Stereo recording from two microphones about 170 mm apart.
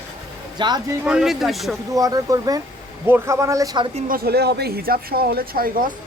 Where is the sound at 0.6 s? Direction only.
25° right (ahead or behind).